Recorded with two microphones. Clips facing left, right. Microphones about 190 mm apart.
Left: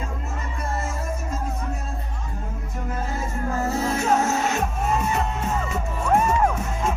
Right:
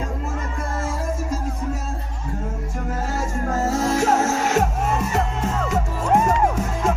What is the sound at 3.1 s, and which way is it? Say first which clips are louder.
Music: right 4 dB; 85° right.